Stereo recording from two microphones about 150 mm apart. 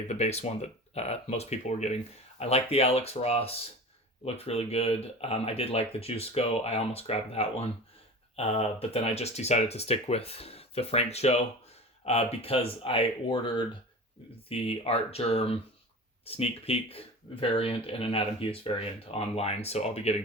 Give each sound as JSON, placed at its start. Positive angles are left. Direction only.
{"t": 0.1, "sound": "speech", "side_deg": 45}
{"t": 14.5, "sound": "speech", "side_deg": 40}